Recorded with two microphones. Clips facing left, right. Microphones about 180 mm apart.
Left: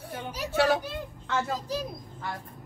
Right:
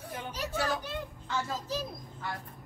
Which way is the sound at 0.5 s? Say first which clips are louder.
Left 9 dB; 70° left (ahead or behind).